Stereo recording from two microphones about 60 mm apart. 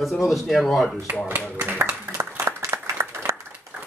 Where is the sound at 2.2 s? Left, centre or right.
Right.